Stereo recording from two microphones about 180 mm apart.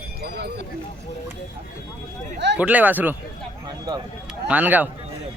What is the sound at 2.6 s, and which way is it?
Speech, 10° right (ahead or behind).